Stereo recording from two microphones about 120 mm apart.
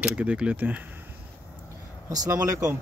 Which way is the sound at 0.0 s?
10° right (ahead or behind).